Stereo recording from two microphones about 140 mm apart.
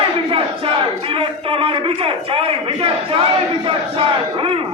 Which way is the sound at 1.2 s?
40° right (ahead or behind).